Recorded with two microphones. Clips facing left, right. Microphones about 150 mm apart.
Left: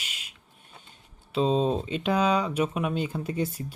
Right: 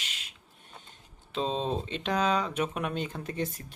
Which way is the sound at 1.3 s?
5° left (ahead or behind).